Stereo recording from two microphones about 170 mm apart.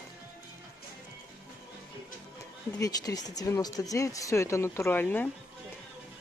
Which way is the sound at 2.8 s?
20° left (ahead or behind).